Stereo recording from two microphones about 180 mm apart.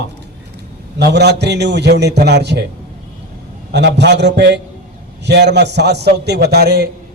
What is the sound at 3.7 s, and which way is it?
A man's voice, 70° right (ahead or behind).